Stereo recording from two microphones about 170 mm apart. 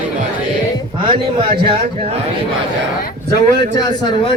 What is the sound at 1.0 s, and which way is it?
A man's voice, 30° right (ahead or behind).